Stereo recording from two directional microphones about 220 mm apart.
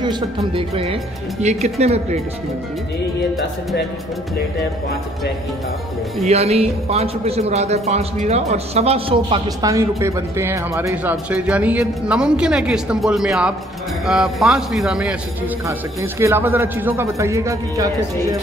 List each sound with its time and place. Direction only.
0.0 s speech: 20° right (ahead or behind)
6.2 s a man's voice: 30° right (ahead or behind)